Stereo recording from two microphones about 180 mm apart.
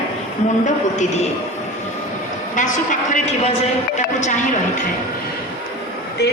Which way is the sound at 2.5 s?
45° left (ahead or behind).